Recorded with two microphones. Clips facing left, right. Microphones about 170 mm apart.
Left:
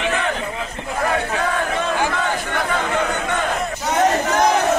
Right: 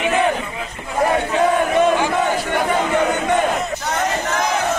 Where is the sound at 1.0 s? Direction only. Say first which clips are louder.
Right 5 dB; 25° right (ahead or behind).